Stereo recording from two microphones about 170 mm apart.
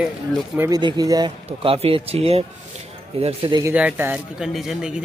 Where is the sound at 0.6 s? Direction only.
20° right (ahead or behind).